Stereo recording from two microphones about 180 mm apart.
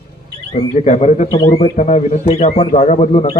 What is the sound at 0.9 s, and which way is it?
A man's voice, 40° left (ahead or behind).